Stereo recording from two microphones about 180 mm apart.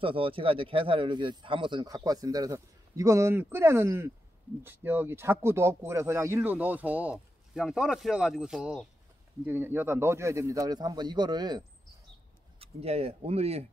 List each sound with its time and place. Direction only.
0.0 s speech: 30° right (ahead or behind)
12.5 s speech: 35° right (ahead or behind)